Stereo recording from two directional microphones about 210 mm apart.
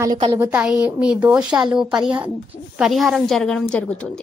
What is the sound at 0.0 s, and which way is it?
A woman's voice, 15° right (ahead or behind).